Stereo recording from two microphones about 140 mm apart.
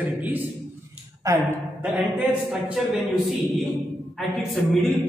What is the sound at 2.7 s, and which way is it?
Speech, 5° right (ahead or behind).